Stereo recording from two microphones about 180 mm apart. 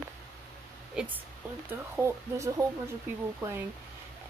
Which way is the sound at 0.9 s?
5° right (ahead or behind).